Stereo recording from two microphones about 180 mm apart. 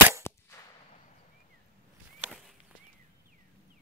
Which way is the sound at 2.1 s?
5° right (ahead or behind).